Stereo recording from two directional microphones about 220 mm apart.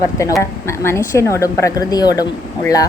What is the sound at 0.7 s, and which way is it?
A woman's voice, 10° left (ahead or behind).